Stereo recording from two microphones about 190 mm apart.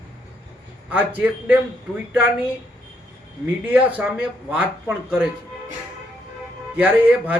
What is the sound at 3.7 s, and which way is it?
Speech, 10° right (ahead or behind).